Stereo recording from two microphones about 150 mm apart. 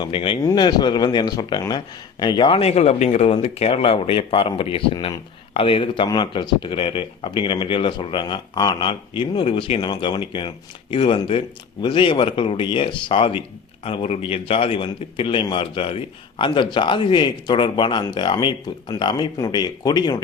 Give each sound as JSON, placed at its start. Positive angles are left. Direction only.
{"t": 0.0, "sound": "a man's voice", "side_deg": 35}